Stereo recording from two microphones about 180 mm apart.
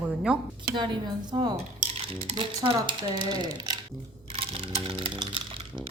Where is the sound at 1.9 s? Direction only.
30° right (ahead or behind).